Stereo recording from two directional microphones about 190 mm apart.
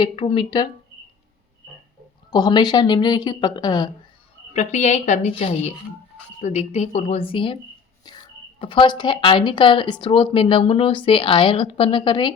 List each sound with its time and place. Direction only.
0.0 s speech: 30° left (ahead or behind)
2.3 s speech: 20° left (ahead or behind)
4.5 s a woman's voice: 40° left (ahead or behind)